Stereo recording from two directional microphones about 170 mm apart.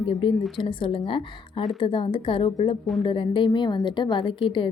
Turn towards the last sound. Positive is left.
turn(degrees=30)  # may be behind; listen again after turning